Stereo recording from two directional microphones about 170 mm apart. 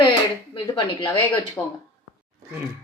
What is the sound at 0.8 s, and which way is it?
Speech, 25° left (ahead or behind).